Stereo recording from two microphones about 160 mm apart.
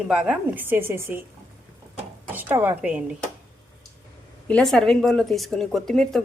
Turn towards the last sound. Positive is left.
turn(degrees=0)  # may be behind; listen again after turning